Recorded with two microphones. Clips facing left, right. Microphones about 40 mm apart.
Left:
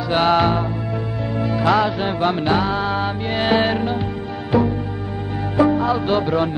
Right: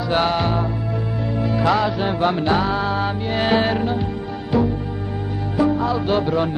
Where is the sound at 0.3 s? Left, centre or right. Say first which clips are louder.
Left 4 dB; centre.